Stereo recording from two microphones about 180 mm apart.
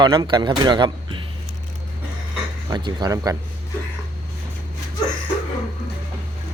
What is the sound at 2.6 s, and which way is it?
Speech, 25° right (ahead or behind).